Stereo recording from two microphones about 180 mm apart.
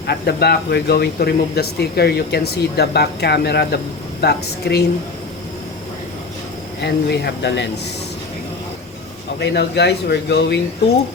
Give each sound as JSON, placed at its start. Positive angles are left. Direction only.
{"t": 0.1, "sound": "speech", "side_deg": 65}
{"t": 6.8, "sound": "speech", "side_deg": 65}
{"t": 9.4, "sound": "speech", "side_deg": 70}